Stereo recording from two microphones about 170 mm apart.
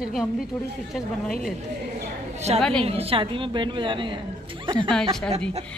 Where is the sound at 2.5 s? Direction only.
35° right (ahead or behind).